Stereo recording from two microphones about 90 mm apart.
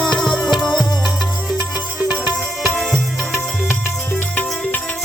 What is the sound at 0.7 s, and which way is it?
Music, 50° left (ahead or behind).